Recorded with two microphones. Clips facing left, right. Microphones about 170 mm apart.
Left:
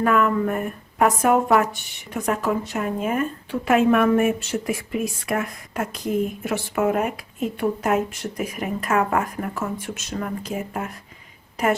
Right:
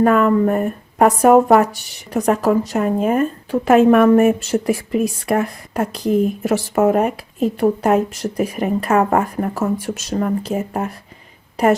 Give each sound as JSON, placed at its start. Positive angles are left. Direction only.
{"t": 0.0, "sound": "speech", "side_deg": -35}